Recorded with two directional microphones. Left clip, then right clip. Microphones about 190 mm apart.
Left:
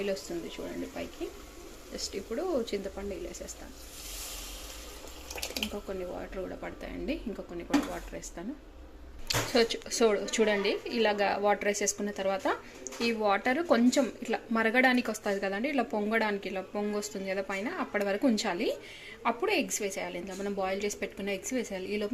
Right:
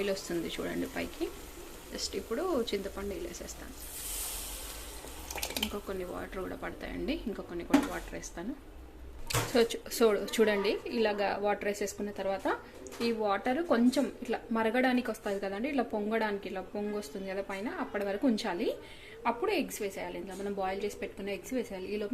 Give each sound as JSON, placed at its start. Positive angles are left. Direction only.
{"t": 0.0, "sound": "speech", "side_deg": 0}
{"t": 0.4, "sound": "speech", "side_deg": -20}
{"t": 1.9, "sound": "speech", "side_deg": 0}
{"t": 5.9, "sound": "speech", "side_deg": 0}
{"t": 9.2, "sound": "speech", "side_deg": 0}